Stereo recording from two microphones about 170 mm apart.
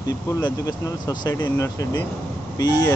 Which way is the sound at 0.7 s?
25° left (ahead or behind).